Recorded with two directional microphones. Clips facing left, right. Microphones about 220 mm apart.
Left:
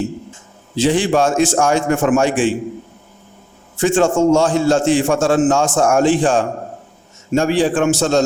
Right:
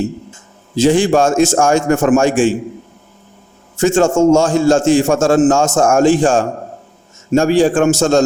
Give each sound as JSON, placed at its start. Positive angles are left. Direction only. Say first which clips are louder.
{"t": 0.8, "sound": "a man's voice", "louder": "right 3 dB", "side_deg": -45}
{"t": 3.8, "sound": "a man's voice", "louder": "right 3 dB", "side_deg": -45}